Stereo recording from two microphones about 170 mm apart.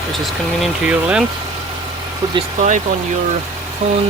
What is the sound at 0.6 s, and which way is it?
Speech, 5° right (ahead or behind).